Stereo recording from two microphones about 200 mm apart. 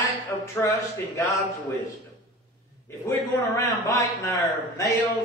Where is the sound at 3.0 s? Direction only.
15° left (ahead or behind).